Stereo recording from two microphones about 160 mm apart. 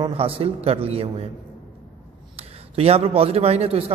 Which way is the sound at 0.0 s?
35° right (ahead or behind).